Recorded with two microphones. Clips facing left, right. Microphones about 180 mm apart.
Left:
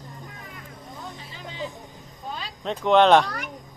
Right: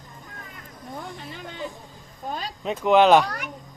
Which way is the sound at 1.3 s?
55° right (ahead or behind).